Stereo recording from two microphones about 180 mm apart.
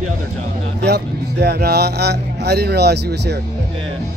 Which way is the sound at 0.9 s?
65° right (ahead or behind).